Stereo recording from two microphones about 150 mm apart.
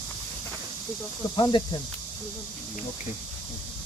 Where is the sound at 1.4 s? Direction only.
35° left (ahead or behind).